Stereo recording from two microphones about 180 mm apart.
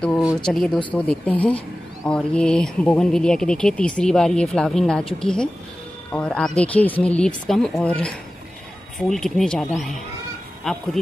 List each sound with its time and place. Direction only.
0.2 s speech: centre (ahead or behind)